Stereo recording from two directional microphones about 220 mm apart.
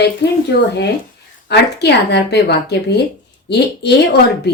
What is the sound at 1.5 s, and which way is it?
Speech, 50° left (ahead or behind).